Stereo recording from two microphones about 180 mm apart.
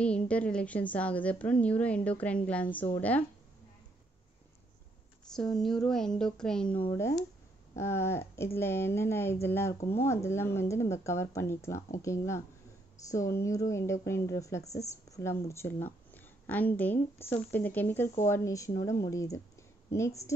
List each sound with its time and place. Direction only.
0.0 s speech: 5° left (ahead or behind)
5.3 s speech: 5° left (ahead or behind)
6.7 s speech: 30° left (ahead or behind)
7.0 s a woman's voice: 15° left (ahead or behind)